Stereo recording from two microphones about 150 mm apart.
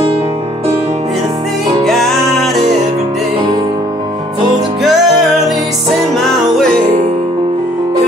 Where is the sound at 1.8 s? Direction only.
Centre (ahead or behind).